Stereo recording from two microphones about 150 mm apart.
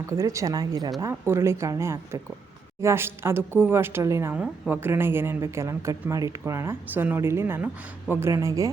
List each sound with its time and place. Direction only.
0.1 s a woman's voice: 20° right (ahead or behind)